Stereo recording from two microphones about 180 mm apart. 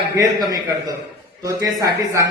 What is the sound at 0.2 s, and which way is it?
A man's voice, 20° right (ahead or behind).